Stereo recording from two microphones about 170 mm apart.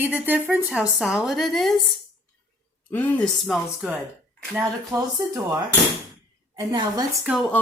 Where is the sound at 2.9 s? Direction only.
10° left (ahead or behind); by 5.1 s 10° right (ahead or behind).